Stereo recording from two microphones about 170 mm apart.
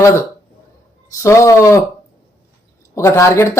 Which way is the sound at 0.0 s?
15° left (ahead or behind).